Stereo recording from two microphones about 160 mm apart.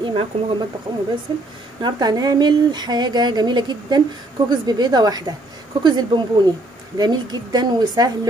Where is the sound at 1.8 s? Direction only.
25° right (ahead or behind).